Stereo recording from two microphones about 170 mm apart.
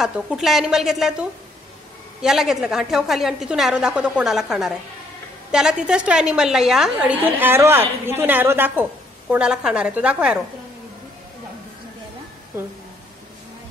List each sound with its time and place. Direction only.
0.0 s a woman's voice: centre (ahead or behind)
2.2 s a woman's voice: centre (ahead or behind)